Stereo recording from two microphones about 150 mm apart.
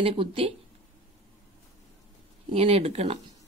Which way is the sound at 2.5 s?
40° right (ahead or behind).